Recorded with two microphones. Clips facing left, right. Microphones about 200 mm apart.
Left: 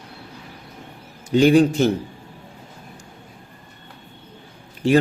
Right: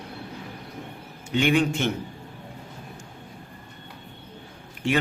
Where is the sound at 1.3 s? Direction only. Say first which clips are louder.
Left 8 dB; 35° left (ahead or behind).